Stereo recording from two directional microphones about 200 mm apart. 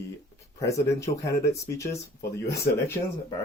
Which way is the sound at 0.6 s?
15° left (ahead or behind).